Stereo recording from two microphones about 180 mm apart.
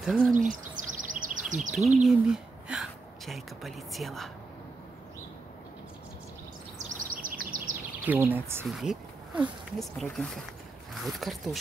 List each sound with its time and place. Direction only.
0.0 s speech: 5° right (ahead or behind)
0.3 s speech: 45° right (ahead or behind)
1.0 s chirp: 45° right (ahead or behind)
1.5 s speech: 45° right (ahead or behind)
2.0 s a woman's voice: 5° right (ahead or behind)
6.8 s bird vocalization: 45° right (ahead or behind)
8.0 s speech: 10° right (ahead or behind)